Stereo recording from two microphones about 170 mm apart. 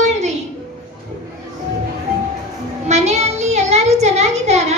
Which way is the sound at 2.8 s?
40° right (ahead or behind).